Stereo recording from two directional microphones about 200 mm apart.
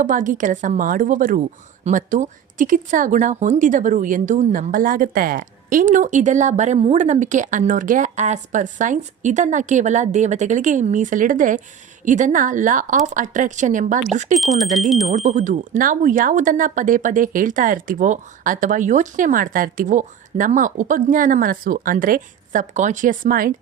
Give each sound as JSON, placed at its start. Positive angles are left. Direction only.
{"t": 0.0, "sound": "speech", "side_deg": -40}
{"t": 14.3, "sound": "speech", "side_deg": 0}
{"t": 15.0, "sound": "speech", "side_deg": -35}